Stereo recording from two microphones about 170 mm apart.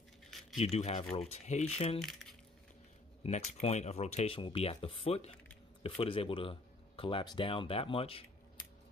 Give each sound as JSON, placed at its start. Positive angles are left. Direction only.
{"t": 0.6, "sound": "speech", "side_deg": 40}
{"t": 2.0, "sound": "speech", "side_deg": 0}
{"t": 3.3, "sound": "speech", "side_deg": 40}